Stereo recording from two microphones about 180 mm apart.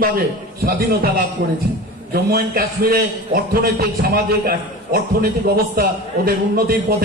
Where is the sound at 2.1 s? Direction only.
60° right (ahead or behind).